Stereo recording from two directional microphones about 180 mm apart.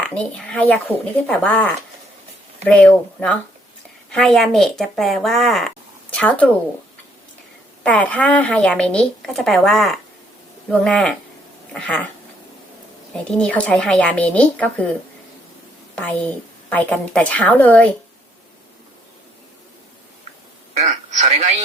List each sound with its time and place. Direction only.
0.0 s a woman's voice: 5° left (ahead or behind)
7.9 s a woman's voice: 10° left (ahead or behind)
13.2 s a woman's voice: 5° left (ahead or behind)
16.0 s a woman's voice: 10° left (ahead or behind)
20.7 s a sound: 40° right (ahead or behind)